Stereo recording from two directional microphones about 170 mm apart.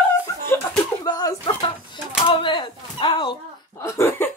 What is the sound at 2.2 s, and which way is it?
Speech, 30° left (ahead or behind).